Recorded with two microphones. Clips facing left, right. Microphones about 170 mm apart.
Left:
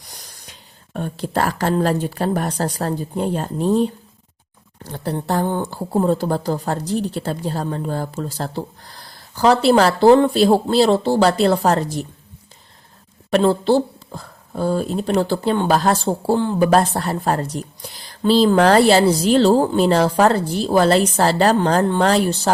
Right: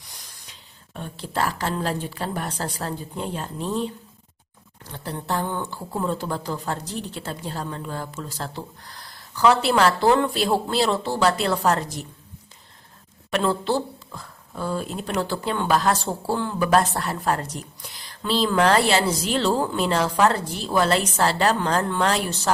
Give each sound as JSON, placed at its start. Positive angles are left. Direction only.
{"t": 0.9, "sound": "a woman's voice", "side_deg": 50}
{"t": 13.3, "sound": "speech", "side_deg": 30}